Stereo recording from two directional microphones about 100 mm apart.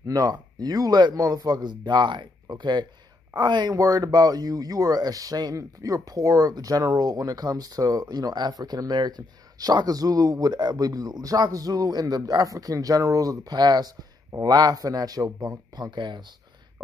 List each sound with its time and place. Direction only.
0.0 s speech: 35° right (ahead or behind)
3.7 s speech: 35° right (ahead or behind)